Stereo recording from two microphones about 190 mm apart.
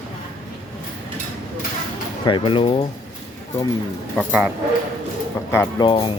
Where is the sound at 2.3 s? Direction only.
25° left (ahead or behind).